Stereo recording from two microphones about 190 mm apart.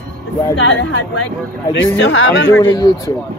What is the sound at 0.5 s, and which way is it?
Speech, 75° left (ahead or behind).